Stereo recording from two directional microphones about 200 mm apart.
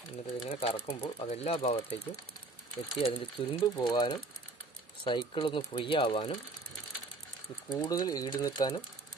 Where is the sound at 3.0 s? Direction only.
25° left (ahead or behind).